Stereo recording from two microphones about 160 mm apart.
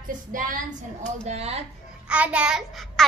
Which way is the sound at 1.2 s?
40° right (ahead or behind).